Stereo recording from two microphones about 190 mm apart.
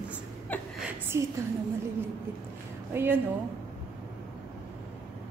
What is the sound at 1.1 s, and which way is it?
Speech, 15° right (ahead or behind).